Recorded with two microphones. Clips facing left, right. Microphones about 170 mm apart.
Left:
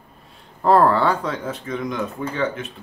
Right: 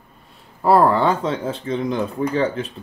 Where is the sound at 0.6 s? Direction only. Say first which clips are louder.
Right 1 dB; 10° right (ahead or behind).